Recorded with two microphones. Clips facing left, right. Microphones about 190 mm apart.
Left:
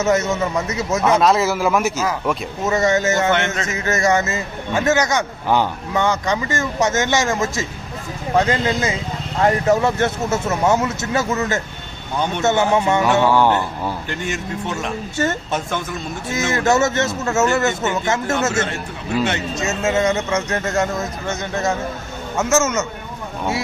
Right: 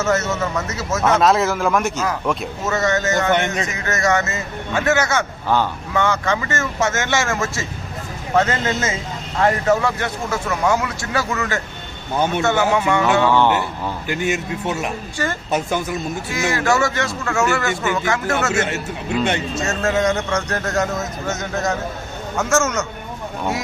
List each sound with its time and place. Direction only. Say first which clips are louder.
0.0 s a man's voice: left 2 dB; 10° left (ahead or behind)
1.0 s a man's voice: even; centre (ahead or behind)
2.7 s a man's voice: left 2 dB; 20° left (ahead or behind)
3.3 s a man's voice: right 1 dB; 15° right (ahead or behind)
3.7 s a man's voice: left 5 dB; 20° left (ahead or behind)
15.5 s a man's voice: right 3 dB; centre (ahead or behind)
16.3 s a man's voice: left 2 dB; 20° left (ahead or behind)
18.5 s speech: right 1 dB; 20° right (ahead or behind)
19.6 s a man's voice: left 1 dB; centre (ahead or behind)